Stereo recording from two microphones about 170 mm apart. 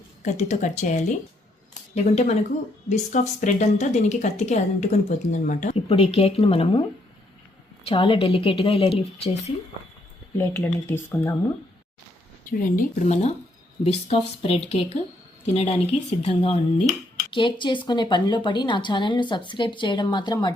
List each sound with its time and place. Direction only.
0.2 s speech: 45° left (ahead or behind)
7.9 s speech: 30° left (ahead or behind)
10.3 s speech: 10° left (ahead or behind)
12.5 s speech: 55° left (ahead or behind)
13.8 s speech: 35° left (ahead or behind)